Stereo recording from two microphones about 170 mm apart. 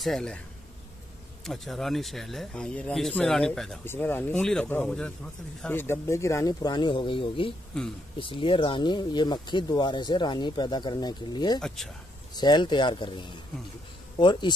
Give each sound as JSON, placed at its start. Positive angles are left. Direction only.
{"t": 0.0, "sound": "speech", "side_deg": 5}
{"t": 1.4, "sound": "speech", "side_deg": 0}
{"t": 3.8, "sound": "speech", "side_deg": 15}
{"t": 7.7, "sound": "speech", "side_deg": 5}
{"t": 8.2, "sound": "speech", "side_deg": 30}
{"t": 11.6, "sound": "speech", "side_deg": 0}
{"t": 12.4, "sound": "speech", "side_deg": 25}